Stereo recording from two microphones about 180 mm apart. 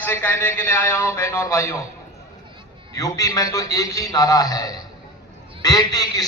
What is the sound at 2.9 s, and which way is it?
A man's voice, 20° left (ahead or behind).